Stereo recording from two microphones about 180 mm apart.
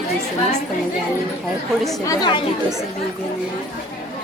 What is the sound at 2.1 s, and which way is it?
Speech, 25° left (ahead or behind).